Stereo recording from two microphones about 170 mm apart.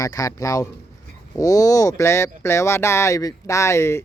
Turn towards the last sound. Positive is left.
turn(degrees=15)  # may be behind; listen again after turning